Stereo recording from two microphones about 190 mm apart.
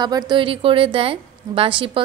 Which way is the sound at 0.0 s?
20° right (ahead or behind).